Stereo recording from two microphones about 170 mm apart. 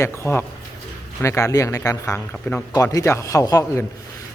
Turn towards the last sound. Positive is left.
turn(degrees=20)  # may be behind; listen again after turning